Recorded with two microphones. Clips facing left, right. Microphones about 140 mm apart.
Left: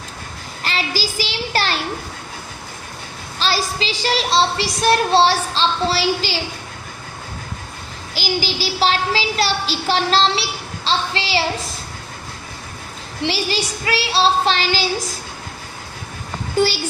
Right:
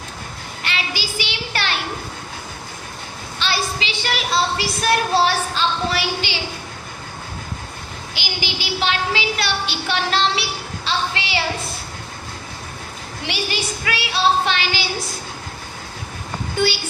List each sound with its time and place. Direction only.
0.6 s a child's voice: 35° left (ahead or behind)
3.3 s a woman's voice: 35° left (ahead or behind)
8.1 s a woman's voice: 40° left (ahead or behind)
13.2 s a woman's voice: 30° left (ahead or behind)